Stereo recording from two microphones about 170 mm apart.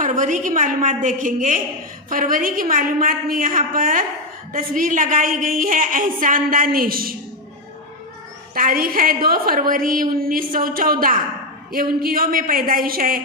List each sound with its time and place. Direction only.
0.0 s a woman's voice: 50° right (ahead or behind)
8.5 s a woman's voice: 55° right (ahead or behind)